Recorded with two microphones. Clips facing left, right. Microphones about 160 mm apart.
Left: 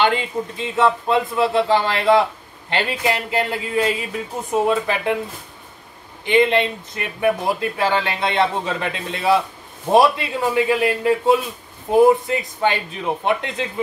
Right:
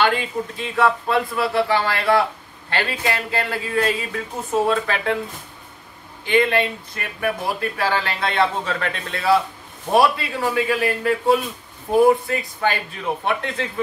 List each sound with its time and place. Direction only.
0.0 s speech: 20° left (ahead or behind)
6.2 s speech: 20° left (ahead or behind)